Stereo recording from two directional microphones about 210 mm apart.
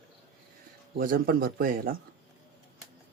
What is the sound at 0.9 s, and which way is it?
Speech, 40° right (ahead or behind).